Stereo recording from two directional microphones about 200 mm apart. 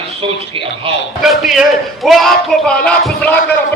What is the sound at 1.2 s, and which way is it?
A man's voice, centre (ahead or behind).